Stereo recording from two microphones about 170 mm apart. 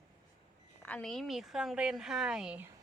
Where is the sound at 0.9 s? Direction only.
5° left (ahead or behind).